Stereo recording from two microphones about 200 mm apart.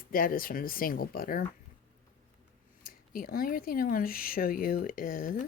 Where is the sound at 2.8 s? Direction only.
45° left (ahead or behind).